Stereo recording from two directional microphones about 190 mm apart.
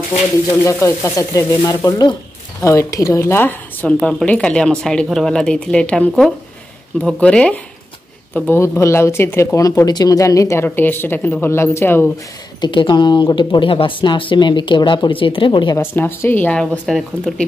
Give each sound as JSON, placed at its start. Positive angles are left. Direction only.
{"t": 0.7, "sound": "a woman's voice", "side_deg": 15}
{"t": 12.5, "sound": "speech", "side_deg": 25}
{"t": 15.8, "sound": "speech", "side_deg": 10}